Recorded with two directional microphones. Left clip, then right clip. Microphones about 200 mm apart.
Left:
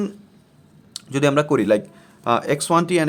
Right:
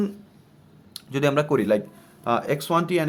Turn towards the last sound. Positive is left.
turn(degrees=30)  # may be behind; listen again after turning